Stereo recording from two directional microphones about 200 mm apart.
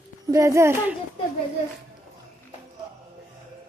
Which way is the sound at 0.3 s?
15° right (ahead or behind).